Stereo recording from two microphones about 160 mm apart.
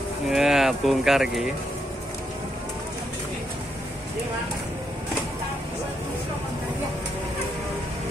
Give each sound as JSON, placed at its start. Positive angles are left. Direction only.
{"t": 0.3, "sound": "speech", "side_deg": 0}